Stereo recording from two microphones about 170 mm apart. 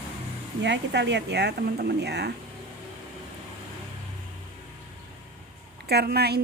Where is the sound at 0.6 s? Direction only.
90° right; by 2.3 s 75° right (ahead or behind).